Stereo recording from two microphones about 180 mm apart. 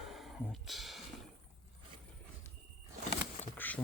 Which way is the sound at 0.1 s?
Centre (ahead or behind).